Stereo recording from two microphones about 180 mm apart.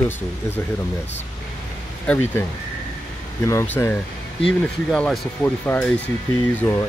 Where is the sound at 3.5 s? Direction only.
15° left (ahead or behind).